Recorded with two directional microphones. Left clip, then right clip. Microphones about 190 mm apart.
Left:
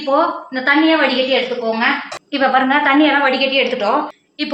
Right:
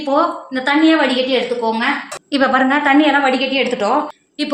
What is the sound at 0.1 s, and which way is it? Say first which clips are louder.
Speech: left 1 dB; 55° right (ahead or behind).